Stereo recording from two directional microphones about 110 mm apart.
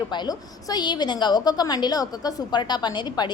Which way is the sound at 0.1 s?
40° left (ahead or behind).